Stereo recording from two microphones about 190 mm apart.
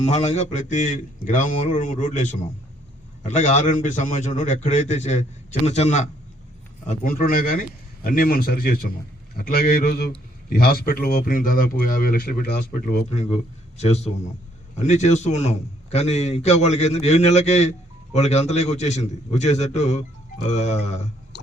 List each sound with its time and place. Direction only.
0.1 s a man's voice: 35° left (ahead or behind)
6.8 s speech: 45° left (ahead or behind)
13.1 s a man's voice: 35° left (ahead or behind)
21.3 s a sound: 65° left (ahead or behind)